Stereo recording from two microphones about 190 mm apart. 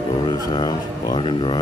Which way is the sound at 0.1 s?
20° left (ahead or behind).